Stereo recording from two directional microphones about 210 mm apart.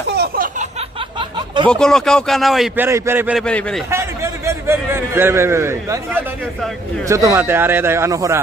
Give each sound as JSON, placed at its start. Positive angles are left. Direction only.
{"t": 0.1, "sound": "a sound", "side_deg": -50}
{"t": 1.7, "sound": "a man's voice", "side_deg": 5}
{"t": 3.4, "sound": "a man's voice", "side_deg": 5}
{"t": 3.9, "sound": "a man's voice", "side_deg": -10}